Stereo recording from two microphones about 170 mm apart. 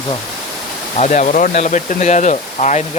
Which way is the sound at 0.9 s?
45° left (ahead or behind).